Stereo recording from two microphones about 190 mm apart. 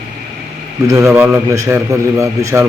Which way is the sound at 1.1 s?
15° right (ahead or behind).